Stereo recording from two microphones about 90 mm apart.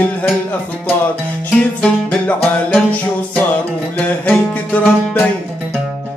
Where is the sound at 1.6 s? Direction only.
15° left (ahead or behind).